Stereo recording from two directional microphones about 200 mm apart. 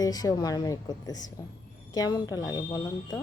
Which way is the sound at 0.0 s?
20° left (ahead or behind).